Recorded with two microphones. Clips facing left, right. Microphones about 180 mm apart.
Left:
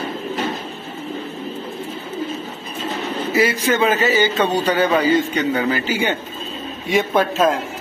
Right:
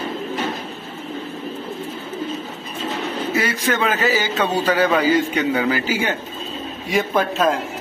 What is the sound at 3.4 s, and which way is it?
A man's voice, centre (ahead or behind).